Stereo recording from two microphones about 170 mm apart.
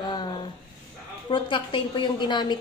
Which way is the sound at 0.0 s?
25° left (ahead or behind).